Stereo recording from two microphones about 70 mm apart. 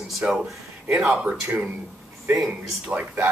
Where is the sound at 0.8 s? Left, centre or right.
Centre.